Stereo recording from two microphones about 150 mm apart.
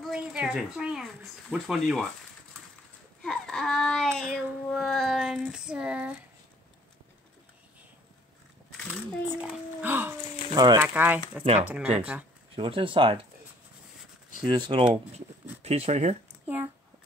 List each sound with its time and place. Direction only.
0.0 s a sound: 5° right (ahead or behind)
3.2 s a sound: 5° left (ahead or behind)
9.4 s speech: 10° right (ahead or behind)
10.5 s speech: 30° right (ahead or behind)
10.8 s speech: 10° right (ahead or behind)
12.5 s speech: 35° right (ahead or behind)
14.4 s speech: 30° right (ahead or behind)
15.6 s speech: 45° right (ahead or behind)
16.4 s a child's voice: 15° right (ahead or behind)